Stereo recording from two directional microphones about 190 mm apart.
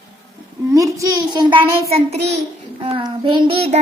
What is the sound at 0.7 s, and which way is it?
A child's voice, 15° right (ahead or behind).